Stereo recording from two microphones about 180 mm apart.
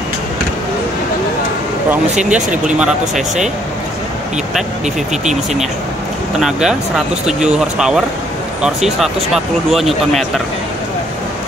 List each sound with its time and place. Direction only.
2.1 s speech: 40° right (ahead or behind)
2.5 s speech: 5° right (ahead or behind)
5.1 s speech: 40° right (ahead or behind)
6.4 s speech: 5° right (ahead or behind)